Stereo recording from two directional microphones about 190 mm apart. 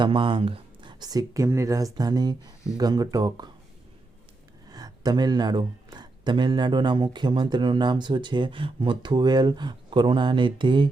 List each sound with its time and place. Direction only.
0.0 s speech: 25° right (ahead or behind)
4.7 s speech: 20° right (ahead or behind)